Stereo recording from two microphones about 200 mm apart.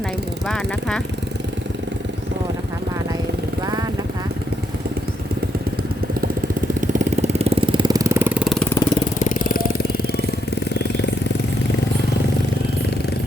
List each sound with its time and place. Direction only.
0.4 s speech: 5° left (ahead or behind)
6.2 s vehicle: 40° right (ahead or behind); by 8.4 s 10° right (ahead or behind)
8.4 s vehicle: 5° left (ahead or behind)
9.1 s vehicle: 40° left (ahead or behind)
10.8 s jackhammer: 60° left (ahead or behind)